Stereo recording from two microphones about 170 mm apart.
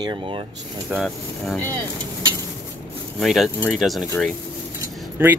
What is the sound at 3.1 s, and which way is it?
Speech, centre (ahead or behind).